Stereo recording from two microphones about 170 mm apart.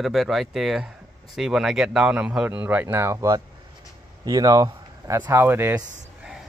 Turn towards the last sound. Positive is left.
turn(degrees=-15)  # may be behind; listen again after turning